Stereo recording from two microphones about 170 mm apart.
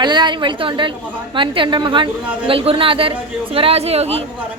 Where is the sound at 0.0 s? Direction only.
25° right (ahead or behind).